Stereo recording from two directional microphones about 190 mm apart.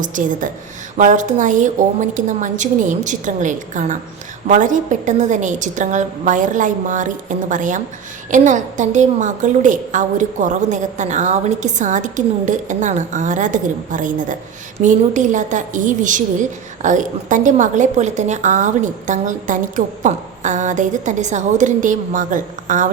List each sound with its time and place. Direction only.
0.0 s a woman's voice: 45° right (ahead or behind)